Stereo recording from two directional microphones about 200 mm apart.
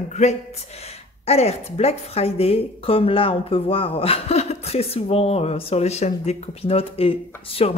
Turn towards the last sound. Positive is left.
turn(degrees=30)  # may be behind; listen again after turning